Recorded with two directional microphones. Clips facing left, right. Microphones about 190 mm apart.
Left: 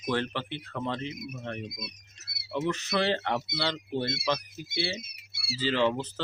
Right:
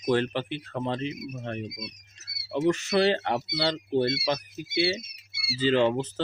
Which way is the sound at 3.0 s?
15° right (ahead or behind).